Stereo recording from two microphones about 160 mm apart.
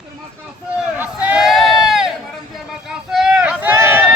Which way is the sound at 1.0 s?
5° right (ahead or behind).